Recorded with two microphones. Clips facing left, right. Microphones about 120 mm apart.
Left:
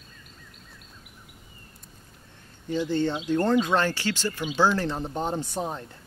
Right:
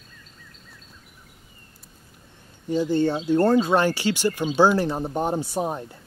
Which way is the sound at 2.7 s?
15° right (ahead or behind).